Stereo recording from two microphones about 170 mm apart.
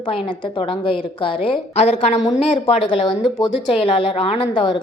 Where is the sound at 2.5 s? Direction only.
35° left (ahead or behind).